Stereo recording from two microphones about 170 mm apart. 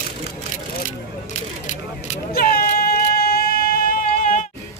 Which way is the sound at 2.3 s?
60° left (ahead or behind).